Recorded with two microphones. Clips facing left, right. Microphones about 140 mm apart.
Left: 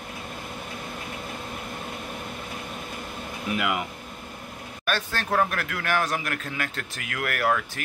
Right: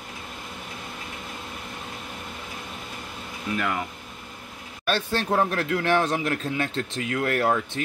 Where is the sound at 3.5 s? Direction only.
15° left (ahead or behind).